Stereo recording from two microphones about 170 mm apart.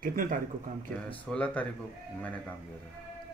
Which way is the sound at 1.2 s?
10° left (ahead or behind).